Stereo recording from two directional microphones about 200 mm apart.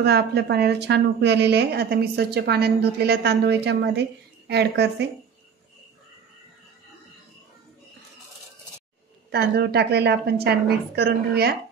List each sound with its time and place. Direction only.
0.0 s a woman's voice: 55° right (ahead or behind)
9.3 s a woman's voice: 50° right (ahead or behind)